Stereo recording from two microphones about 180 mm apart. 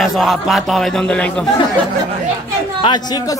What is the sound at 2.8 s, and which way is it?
Speech, 25° left (ahead or behind).